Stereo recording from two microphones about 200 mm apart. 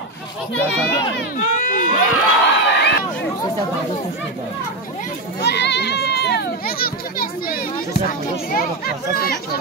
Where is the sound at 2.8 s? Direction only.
55° left (ahead or behind).